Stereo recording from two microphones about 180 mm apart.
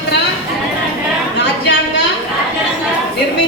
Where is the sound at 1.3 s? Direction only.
70° left (ahead or behind).